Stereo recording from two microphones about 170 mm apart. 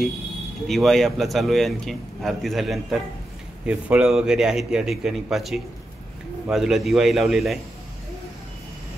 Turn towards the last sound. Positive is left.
turn(degrees=0)  # may be behind; listen again after turning